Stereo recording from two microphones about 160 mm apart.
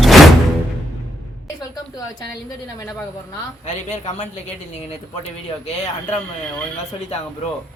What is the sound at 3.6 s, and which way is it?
Speech, 50° left (ahead or behind).